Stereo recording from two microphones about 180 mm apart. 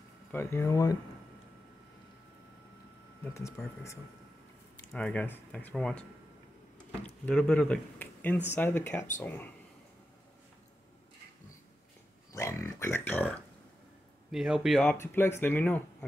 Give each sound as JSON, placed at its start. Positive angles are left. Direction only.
{"t": 0.3, "sound": "speech", "side_deg": 15}
{"t": 3.3, "sound": "speech", "side_deg": 15}
{"t": 12.3, "sound": "dog", "side_deg": 15}
{"t": 14.3, "sound": "speech", "side_deg": -5}